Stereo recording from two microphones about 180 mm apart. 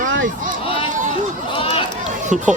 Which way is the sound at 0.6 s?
30° left (ahead or behind).